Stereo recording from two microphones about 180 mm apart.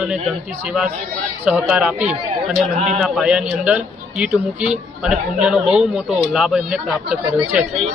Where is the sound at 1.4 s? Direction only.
5° right (ahead or behind).